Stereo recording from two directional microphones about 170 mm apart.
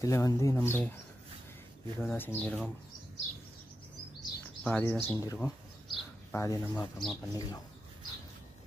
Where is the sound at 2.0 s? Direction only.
15° left (ahead or behind).